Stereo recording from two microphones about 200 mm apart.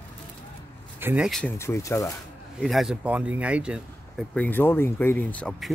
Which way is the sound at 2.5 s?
Centre (ahead or behind).